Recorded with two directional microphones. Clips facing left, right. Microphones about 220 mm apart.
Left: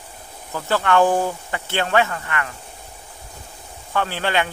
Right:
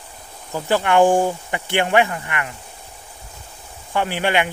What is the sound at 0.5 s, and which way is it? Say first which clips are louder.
Speech: right 2 dB; 15° right (ahead or behind).